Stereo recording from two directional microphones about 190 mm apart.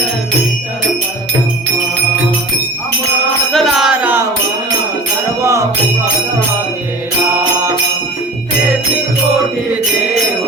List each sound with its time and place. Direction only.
3.5 s music: centre (ahead or behind)
5.4 s music: 15° right (ahead or behind)